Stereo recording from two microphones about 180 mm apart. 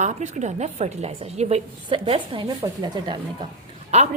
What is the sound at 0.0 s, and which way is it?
A woman's voice, 40° right (ahead or behind).